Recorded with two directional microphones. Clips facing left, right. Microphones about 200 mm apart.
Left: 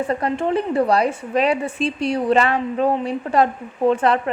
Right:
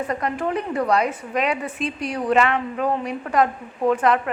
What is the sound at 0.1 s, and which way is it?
A woman's voice, 30° left (ahead or behind).